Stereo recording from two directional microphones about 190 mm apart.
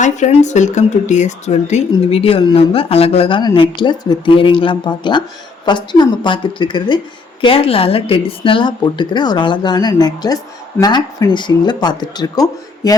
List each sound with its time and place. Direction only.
0.0 s speech: 40° left (ahead or behind); by 12.9 s 20° left (ahead or behind)